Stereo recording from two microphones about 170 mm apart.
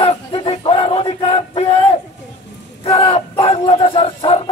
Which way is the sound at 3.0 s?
35° left (ahead or behind).